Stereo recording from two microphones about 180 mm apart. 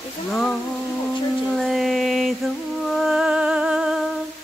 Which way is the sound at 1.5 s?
Centre (ahead or behind).